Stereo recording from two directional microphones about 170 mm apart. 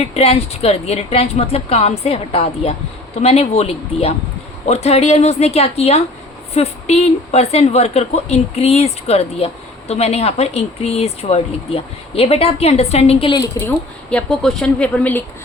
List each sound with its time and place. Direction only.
0.0 s speech: 35° left (ahead or behind)
13.6 s speech: 10° left (ahead or behind)